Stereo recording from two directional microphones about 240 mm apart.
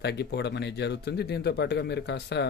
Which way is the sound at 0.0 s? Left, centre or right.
Left.